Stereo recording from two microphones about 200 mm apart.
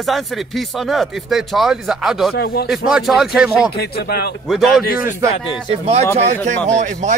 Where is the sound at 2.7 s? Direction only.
Centre (ahead or behind).